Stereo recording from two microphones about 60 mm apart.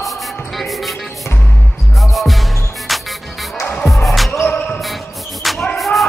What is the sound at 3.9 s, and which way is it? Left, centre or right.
Music, centre.